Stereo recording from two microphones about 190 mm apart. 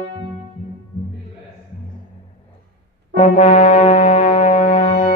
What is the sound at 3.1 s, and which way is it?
Brass instrument, 35° left (ahead or behind).